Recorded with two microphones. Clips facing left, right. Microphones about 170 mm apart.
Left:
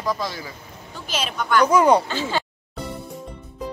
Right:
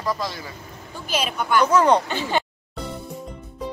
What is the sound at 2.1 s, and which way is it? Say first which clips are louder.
Speech: right 1 dB; 15° right (ahead or behind).